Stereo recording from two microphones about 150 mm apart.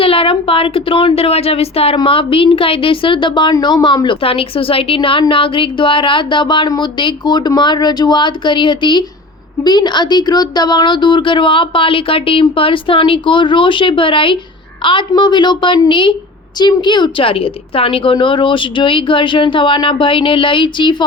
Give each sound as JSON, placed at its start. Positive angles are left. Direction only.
{"t": 0.0, "sound": "speech", "side_deg": 40}